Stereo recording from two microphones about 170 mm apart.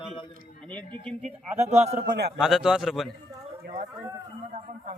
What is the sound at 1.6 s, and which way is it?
Speech, 40° right (ahead or behind).